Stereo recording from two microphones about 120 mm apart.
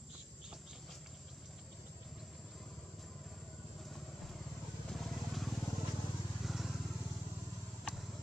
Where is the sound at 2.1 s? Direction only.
Centre (ahead or behind).